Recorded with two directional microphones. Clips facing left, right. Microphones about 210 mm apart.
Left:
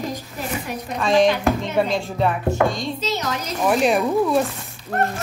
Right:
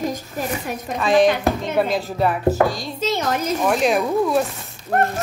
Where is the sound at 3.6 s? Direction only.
Centre (ahead or behind).